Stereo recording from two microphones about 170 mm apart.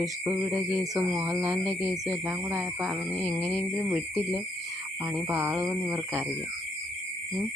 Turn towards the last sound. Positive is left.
turn(degrees=-10)  # may be behind; listen again after turning